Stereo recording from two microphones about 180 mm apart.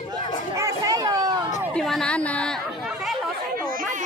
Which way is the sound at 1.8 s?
5° left (ahead or behind).